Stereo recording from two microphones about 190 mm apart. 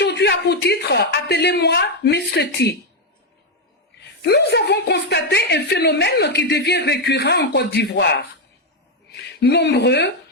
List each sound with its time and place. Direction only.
0.0 s a woman's voice: 60° left (ahead or behind)
4.2 s a woman's voice: 60° left (ahead or behind)